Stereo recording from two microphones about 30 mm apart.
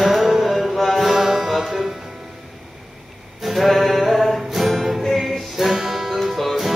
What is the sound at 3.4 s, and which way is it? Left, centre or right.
Music, centre.